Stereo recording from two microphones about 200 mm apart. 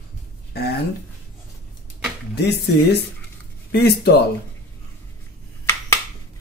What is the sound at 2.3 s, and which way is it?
Speech, 55° left (ahead or behind).